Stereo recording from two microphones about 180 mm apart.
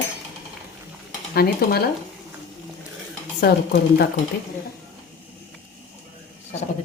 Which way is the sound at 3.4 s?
60° left (ahead or behind).